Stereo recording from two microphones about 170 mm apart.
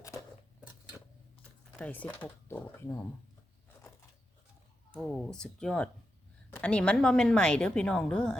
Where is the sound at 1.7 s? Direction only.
10° left (ahead or behind).